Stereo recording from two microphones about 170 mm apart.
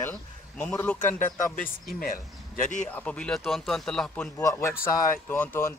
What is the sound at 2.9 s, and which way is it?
Speech, 10° left (ahead or behind).